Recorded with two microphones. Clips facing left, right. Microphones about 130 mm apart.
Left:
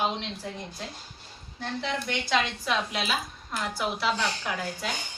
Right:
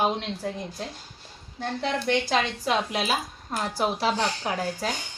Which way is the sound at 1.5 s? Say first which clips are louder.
Right 3 dB; 40° right (ahead or behind).